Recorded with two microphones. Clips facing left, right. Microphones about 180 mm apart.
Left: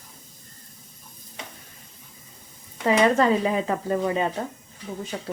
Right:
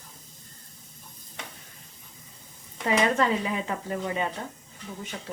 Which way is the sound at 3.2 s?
35° left (ahead or behind).